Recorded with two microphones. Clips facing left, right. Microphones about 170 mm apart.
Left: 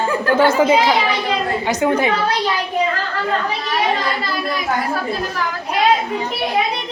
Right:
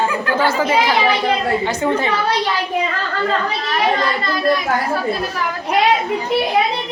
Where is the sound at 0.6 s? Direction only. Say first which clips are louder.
Left 1 dB; 15° left (ahead or behind).